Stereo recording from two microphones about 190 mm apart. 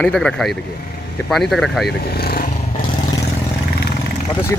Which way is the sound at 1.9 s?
55° left (ahead or behind).